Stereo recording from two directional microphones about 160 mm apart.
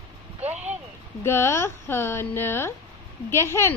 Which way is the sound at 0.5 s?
10° right (ahead or behind).